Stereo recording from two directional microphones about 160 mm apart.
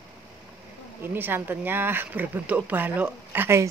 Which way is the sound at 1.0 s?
10° right (ahead or behind).